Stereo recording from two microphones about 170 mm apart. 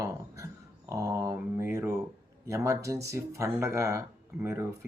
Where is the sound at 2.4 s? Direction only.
20° right (ahead or behind).